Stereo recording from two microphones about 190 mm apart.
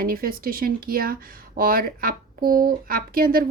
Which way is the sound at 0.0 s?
50° right (ahead or behind).